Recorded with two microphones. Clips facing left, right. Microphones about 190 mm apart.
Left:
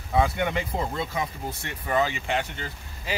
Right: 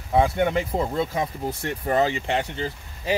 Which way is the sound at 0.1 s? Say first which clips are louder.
Right 4 dB; 35° right (ahead or behind).